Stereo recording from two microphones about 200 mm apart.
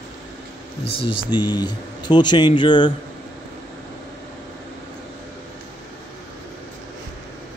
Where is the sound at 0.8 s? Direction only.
25° left (ahead or behind).